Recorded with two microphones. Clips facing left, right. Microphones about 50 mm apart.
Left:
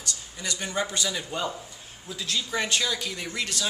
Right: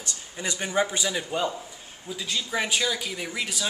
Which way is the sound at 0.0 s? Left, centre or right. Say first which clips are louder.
Right 2 dB; right.